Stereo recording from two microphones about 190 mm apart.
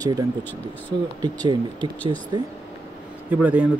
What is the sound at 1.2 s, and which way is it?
Speech, 20° right (ahead or behind).